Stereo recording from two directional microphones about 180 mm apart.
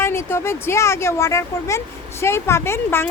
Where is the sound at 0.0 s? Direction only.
15° left (ahead or behind).